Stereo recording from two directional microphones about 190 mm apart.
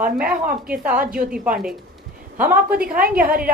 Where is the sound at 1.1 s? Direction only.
5° right (ahead or behind).